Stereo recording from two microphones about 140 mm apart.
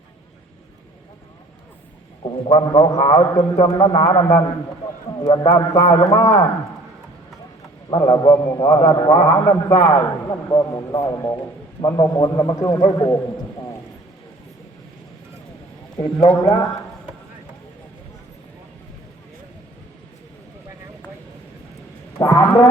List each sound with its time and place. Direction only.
2.8 s a man's voice: 35° left (ahead or behind)
7.9 s a man's voice: 30° left (ahead or behind)
9.7 s a man's voice: 35° left (ahead or behind)
10.5 s a man's voice: 25° left (ahead or behind)
16.0 s a man's voice: 25° left (ahead or behind)
22.2 s a man's voice: 25° left (ahead or behind)